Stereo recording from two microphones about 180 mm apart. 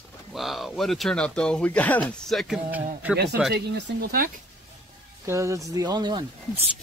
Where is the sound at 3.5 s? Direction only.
65° right (ahead or behind).